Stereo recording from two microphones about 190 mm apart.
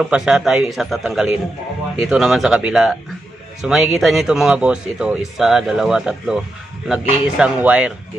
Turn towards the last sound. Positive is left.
turn(degrees=-5)  # may be behind; listen again after turning